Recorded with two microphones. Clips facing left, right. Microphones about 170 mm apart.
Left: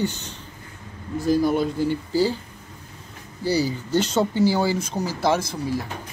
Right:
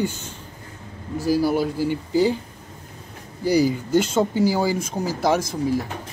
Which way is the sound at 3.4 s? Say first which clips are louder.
Right 4 dB; 15° right (ahead or behind).